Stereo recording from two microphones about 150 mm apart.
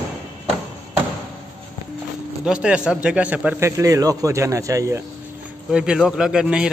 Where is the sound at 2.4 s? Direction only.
5° right (ahead or behind).